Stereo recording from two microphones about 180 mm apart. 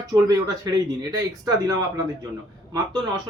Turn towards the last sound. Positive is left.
turn(degrees=-20)  # may be behind; listen again after turning